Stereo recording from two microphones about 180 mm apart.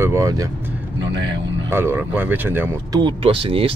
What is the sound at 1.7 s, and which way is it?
Speech, 15° right (ahead or behind).